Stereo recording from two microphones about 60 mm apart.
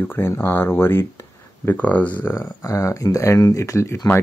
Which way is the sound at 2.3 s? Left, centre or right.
Left.